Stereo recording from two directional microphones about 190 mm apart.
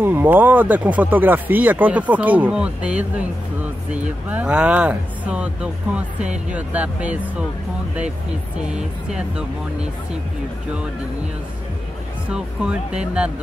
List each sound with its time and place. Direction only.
0.0 s speech: 10° right (ahead or behind)
8.7 s speech: 5° right (ahead or behind)
12.3 s speech: 5° right (ahead or behind)